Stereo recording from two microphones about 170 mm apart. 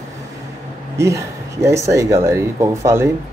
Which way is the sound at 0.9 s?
15° right (ahead or behind).